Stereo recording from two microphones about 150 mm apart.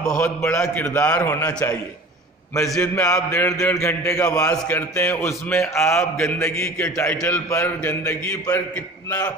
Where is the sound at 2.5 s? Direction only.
5° left (ahead or behind).